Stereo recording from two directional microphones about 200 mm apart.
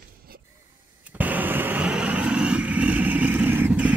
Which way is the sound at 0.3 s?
50° right (ahead or behind).